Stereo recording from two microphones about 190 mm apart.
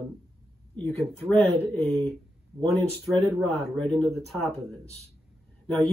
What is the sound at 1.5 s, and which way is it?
Speech, 35° right (ahead or behind).